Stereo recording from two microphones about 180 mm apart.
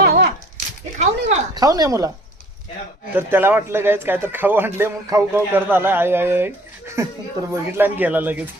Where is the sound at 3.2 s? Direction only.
10° right (ahead or behind).